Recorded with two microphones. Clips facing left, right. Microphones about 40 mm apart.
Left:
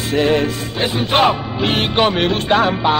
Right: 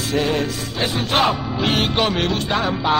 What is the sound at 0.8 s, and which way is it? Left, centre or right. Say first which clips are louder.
Music: left 4 dB; centre.